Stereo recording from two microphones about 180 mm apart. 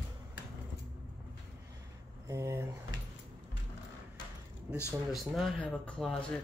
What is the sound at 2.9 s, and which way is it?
Keys jangling, 90° left.